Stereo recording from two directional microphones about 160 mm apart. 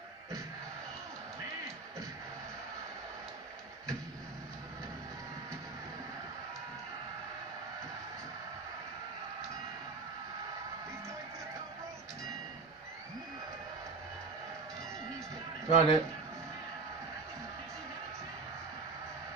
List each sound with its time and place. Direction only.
15.7 s a man's voice: 35° left (ahead or behind)